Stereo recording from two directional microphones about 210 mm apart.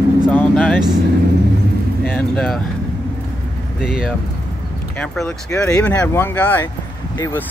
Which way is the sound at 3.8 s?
Centre (ahead or behind).